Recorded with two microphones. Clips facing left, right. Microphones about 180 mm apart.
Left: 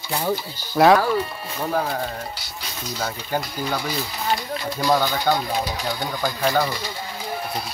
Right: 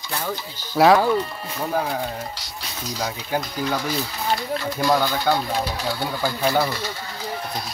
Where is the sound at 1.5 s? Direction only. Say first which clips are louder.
Even; 10° right (ahead or behind).